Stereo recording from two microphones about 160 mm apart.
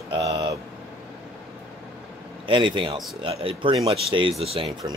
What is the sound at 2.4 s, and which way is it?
Speech, 30° right (ahead or behind).